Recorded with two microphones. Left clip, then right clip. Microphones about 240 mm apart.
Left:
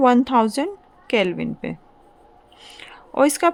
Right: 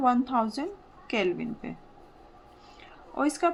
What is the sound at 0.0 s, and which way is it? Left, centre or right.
A woman's voice, left.